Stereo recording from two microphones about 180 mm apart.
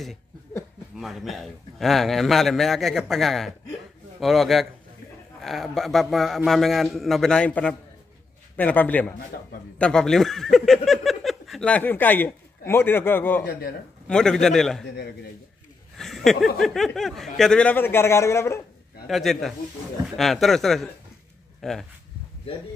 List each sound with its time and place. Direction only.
0.9 s a man's voice: centre (ahead or behind)
9.3 s a man's voice: 55° left (ahead or behind)
9.8 s a man's voice: 5° left (ahead or behind)
16.3 s a man's voice: centre (ahead or behind)
19.0 s a man's voice: centre (ahead or behind)